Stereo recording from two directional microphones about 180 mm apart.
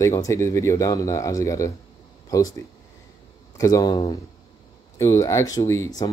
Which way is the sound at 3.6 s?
20° left (ahead or behind).